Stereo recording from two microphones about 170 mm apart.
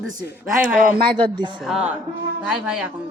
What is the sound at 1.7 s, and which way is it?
A woman's voice, 5° right (ahead or behind).